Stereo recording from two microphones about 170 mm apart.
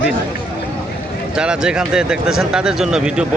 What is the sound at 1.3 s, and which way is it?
Speech, 5° right (ahead or behind).